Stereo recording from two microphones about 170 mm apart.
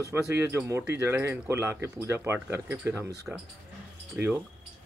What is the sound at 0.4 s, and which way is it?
Speech, 15° right (ahead or behind).